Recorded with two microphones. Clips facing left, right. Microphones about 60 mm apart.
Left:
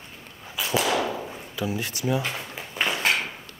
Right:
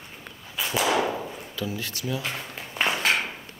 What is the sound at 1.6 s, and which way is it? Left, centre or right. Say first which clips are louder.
Speech: left 3 dB; centre.